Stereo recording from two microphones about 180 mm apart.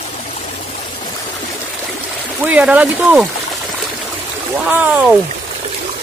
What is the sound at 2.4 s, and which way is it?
Speech, 10° right (ahead or behind).